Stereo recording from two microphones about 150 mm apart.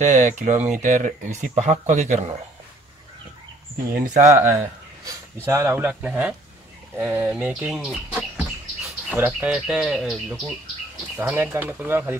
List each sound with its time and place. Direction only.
0.0 s speech: 55° right (ahead or behind)
3.9 s speech: 70° right (ahead or behind)
4.2 s speech: 20° right (ahead or behind)
7.0 s bird: 10° right (ahead or behind)
9.1 s speech: 10° right (ahead or behind)
11.1 s speech: 10° right (ahead or behind)